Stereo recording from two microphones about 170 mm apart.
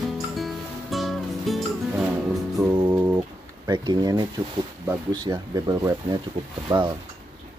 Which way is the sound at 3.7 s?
25° right (ahead or behind).